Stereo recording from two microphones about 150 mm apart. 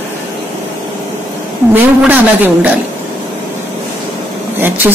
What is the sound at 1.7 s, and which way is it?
Speech, 10° right (ahead or behind).